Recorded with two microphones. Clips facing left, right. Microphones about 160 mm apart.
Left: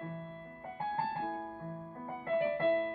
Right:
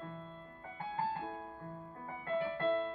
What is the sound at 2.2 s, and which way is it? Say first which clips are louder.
Keyboard: left 4 dB; 55° left (ahead or behind).